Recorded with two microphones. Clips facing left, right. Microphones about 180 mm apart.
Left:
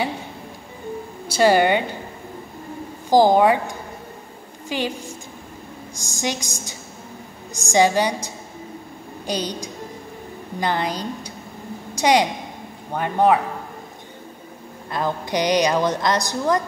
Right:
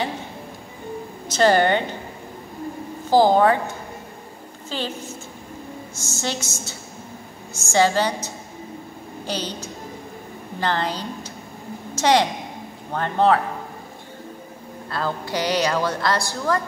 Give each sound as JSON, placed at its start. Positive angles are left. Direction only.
{"t": 1.2, "sound": "a woman's voice", "side_deg": 10}
{"t": 3.1, "sound": "a woman's voice", "side_deg": 15}
{"t": 14.9, "sound": "a woman's voice", "side_deg": 15}